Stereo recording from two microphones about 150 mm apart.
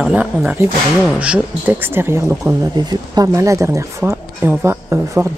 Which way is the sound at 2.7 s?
25° right (ahead or behind).